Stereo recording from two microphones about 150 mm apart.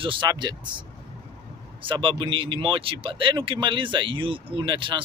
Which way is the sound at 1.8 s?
35° right (ahead or behind).